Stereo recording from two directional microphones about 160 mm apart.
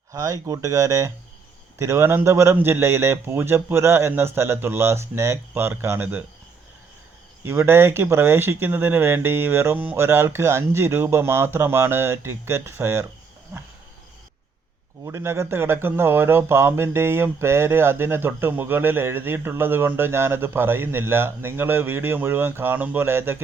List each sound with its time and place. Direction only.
0.1 s speech: 20° right (ahead or behind)
7.4 s speech: 15° right (ahead or behind)
15.0 s speech: 15° right (ahead or behind)